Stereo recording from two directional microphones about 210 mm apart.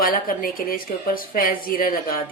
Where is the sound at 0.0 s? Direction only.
40° left (ahead or behind).